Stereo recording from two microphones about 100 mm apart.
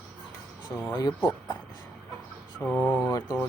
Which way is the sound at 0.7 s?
25° left (ahead or behind).